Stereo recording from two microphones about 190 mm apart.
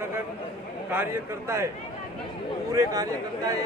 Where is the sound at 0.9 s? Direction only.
10° right (ahead or behind).